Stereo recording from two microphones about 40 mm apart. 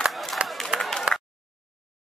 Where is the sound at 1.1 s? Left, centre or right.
Right.